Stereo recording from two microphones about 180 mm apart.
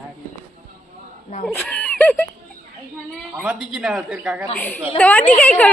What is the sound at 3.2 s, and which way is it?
A woman's voice, 5° right (ahead or behind).